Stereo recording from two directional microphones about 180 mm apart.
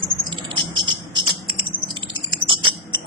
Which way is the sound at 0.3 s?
25° right (ahead or behind).